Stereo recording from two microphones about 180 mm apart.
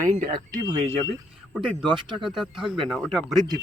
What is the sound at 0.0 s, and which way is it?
Speech, 45° right (ahead or behind).